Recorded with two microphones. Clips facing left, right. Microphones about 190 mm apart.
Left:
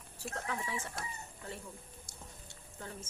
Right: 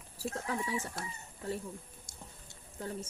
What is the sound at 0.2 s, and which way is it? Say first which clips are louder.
Speech: right 4 dB; 35° right (ahead or behind).